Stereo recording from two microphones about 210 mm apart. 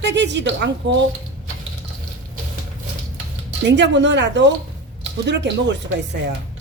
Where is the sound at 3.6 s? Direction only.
55° right (ahead or behind).